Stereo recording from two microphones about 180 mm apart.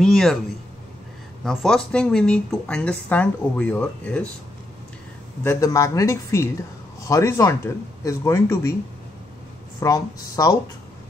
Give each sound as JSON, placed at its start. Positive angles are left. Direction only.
{"t": 0.0, "sound": "speech", "side_deg": 0}
{"t": 1.4, "sound": "speech", "side_deg": 0}
{"t": 5.4, "sound": "speech", "side_deg": 15}
{"t": 9.8, "sound": "speech", "side_deg": 20}